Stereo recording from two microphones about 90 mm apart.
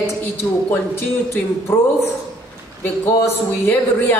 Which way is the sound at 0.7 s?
25° left (ahead or behind).